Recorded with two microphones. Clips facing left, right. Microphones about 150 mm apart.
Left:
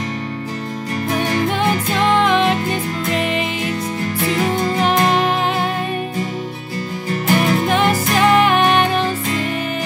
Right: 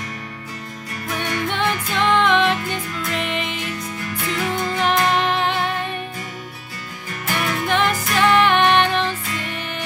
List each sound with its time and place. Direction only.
1.1 s music: 30° left (ahead or behind)
7.1 s music: 30° left (ahead or behind)